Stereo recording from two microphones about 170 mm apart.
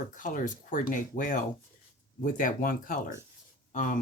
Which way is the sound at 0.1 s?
50° left (ahead or behind).